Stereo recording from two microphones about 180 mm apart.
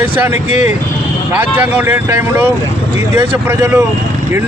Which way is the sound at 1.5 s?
10° right (ahead or behind).